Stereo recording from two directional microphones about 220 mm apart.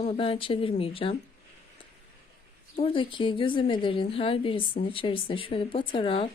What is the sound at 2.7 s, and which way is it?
Speech, 25° left (ahead or behind).